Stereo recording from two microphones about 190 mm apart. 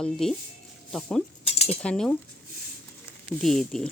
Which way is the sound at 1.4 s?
30° left (ahead or behind).